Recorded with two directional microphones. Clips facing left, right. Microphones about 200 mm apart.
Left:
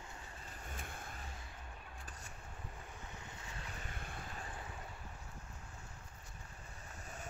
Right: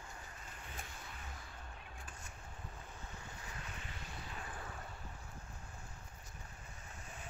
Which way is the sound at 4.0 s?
55° left (ahead or behind).